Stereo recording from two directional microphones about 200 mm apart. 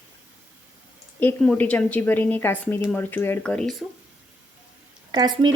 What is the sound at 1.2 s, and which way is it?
A woman's voice, 10° left (ahead or behind).